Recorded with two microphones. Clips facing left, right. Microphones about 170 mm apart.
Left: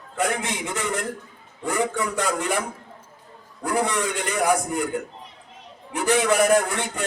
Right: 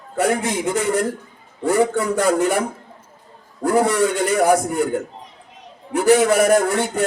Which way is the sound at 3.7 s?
35° right (ahead or behind).